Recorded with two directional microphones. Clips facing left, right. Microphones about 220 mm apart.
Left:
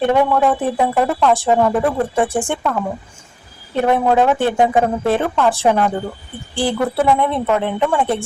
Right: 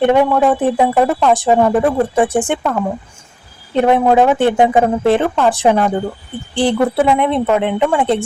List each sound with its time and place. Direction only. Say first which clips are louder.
0.0 s speech: right 3 dB; 20° right (ahead or behind)
3.8 s a woman's voice: right 3 dB; 20° right (ahead or behind)